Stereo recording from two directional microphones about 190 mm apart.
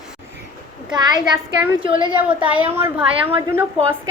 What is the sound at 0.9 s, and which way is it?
A woman's voice, 20° right (ahead or behind).